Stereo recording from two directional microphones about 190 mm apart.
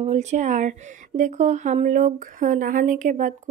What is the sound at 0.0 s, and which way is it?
Speech, 35° right (ahead or behind).